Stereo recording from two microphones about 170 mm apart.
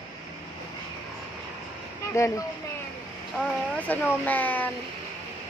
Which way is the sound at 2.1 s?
15° left (ahead or behind).